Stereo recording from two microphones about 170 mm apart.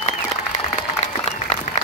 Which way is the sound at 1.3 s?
40° left (ahead or behind).